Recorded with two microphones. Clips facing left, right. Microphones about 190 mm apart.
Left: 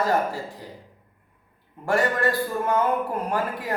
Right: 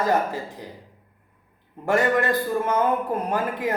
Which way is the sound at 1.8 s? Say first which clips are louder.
Right 2 dB; 20° right (ahead or behind).